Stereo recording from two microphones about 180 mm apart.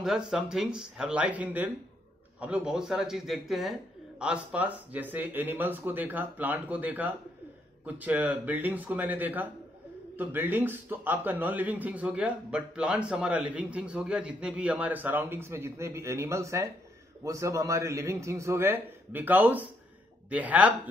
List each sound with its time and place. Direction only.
0.0 s speech: centre (ahead or behind)